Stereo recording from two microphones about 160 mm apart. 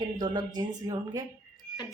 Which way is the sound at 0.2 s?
25° right (ahead or behind).